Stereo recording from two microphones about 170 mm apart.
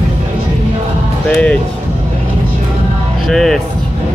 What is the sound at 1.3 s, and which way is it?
Speech, 5° left (ahead or behind).